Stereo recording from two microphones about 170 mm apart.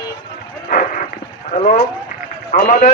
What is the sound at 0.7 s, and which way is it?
Dog, 50° left (ahead or behind).